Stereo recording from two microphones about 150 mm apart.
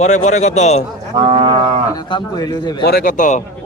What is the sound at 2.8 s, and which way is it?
Speech, 85° left.